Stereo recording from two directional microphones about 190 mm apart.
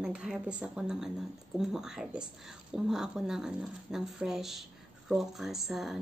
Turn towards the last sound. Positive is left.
turn(degrees=0)  # may be behind; listen again after turning